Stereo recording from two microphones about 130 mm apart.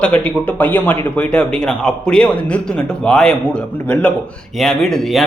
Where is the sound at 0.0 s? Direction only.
10° left (ahead or behind).